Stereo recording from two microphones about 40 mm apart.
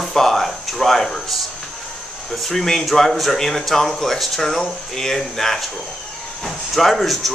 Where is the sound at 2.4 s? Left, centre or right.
Centre.